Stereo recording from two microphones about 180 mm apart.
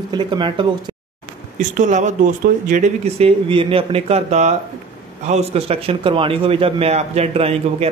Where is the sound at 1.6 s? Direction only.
45° right (ahead or behind).